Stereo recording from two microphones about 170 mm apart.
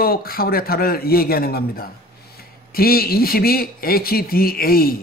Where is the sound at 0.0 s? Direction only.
65° left (ahead or behind).